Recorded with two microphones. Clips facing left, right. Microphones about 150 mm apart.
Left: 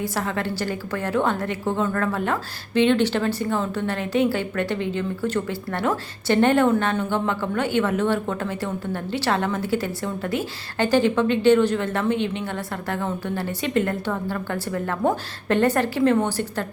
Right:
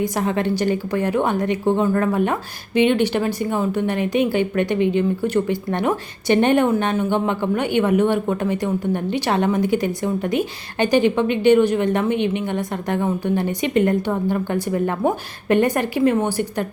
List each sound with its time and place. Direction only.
0.0 s a woman's voice: 20° right (ahead or behind)